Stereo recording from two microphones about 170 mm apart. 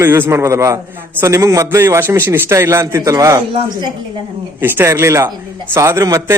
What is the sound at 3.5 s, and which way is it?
Speech, 35° right (ahead or behind).